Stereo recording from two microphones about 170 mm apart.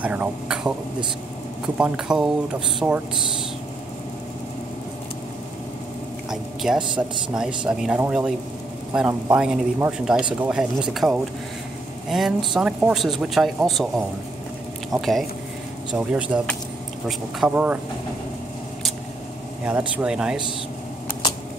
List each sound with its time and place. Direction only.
0.0 s speech: 10° right (ahead or behind)
1.8 s speech: 5° right (ahead or behind)
2.8 s a man's voice: 20° right (ahead or behind)
6.3 s speech: centre (ahead or behind)
14.9 s speech: centre (ahead or behind)
20.0 s speech: 5° right (ahead or behind)